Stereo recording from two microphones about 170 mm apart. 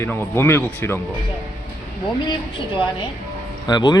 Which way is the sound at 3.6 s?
25° left (ahead or behind).